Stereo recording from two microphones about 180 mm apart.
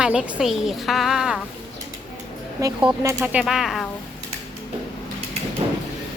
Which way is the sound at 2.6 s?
15° right (ahead or behind).